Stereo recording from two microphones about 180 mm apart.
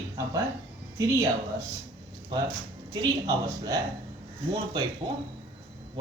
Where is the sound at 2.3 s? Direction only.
25° right (ahead or behind).